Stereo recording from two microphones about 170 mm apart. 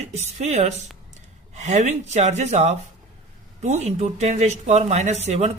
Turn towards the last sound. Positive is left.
turn(degrees=-40)  # may be behind; listen again after turning